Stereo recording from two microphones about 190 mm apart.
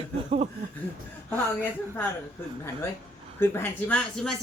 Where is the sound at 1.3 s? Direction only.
10° left (ahead or behind).